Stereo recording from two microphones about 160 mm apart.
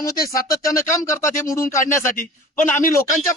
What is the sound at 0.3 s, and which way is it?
Speech, 20° left (ahead or behind).